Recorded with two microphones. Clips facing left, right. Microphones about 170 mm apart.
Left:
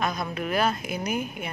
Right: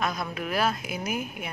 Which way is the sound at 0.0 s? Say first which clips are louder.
Left 2 dB; centre (ahead or behind).